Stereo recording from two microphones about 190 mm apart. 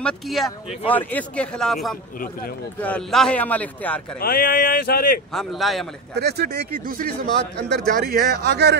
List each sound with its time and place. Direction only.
0.0 s a man's voice: centre (ahead or behind)
2.1 s speech: 50° left (ahead or behind)
2.8 s a man's voice: 5° left (ahead or behind)
4.2 s speech: 55° left (ahead or behind)
5.3 s a man's voice: centre (ahead or behind)
6.1 s speech: 55° right (ahead or behind)